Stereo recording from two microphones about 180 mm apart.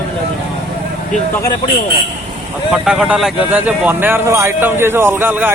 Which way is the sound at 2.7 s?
5° right (ahead or behind).